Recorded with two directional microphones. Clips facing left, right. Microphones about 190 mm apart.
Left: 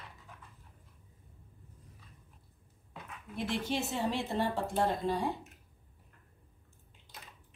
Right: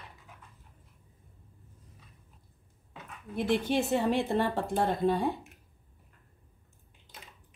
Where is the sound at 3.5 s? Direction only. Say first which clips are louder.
Right 8 dB; 55° right (ahead or behind).